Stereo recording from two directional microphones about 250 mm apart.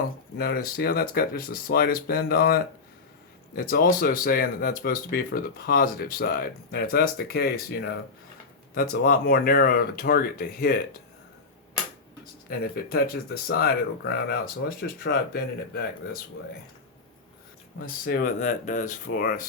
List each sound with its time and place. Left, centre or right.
0.3 s speech: left
12.2 s speech: left
17.7 s speech: left